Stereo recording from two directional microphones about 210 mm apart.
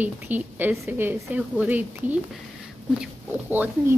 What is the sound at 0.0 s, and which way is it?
A woman's voice, 10° right (ahead or behind).